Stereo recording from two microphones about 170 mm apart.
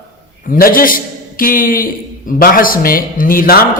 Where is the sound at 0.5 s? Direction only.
55° left (ahead or behind).